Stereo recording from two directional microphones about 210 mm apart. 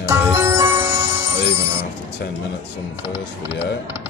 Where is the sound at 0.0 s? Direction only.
15° right (ahead or behind).